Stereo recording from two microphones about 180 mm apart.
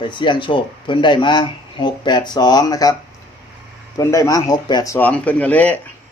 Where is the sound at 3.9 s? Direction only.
20° left (ahead or behind).